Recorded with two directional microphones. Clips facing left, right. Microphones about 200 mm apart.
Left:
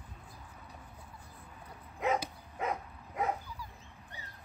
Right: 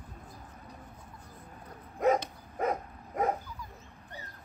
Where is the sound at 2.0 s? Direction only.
40° right (ahead or behind).